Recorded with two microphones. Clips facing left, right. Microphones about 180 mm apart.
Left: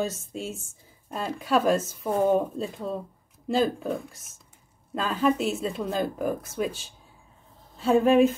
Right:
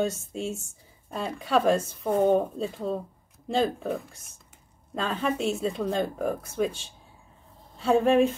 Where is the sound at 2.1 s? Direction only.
25° right (ahead or behind).